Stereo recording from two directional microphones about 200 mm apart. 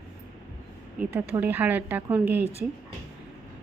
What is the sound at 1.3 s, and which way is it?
A woman's voice, 10° right (ahead or behind).